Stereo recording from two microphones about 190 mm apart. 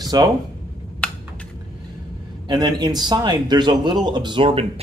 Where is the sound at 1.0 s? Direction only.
5° left (ahead or behind).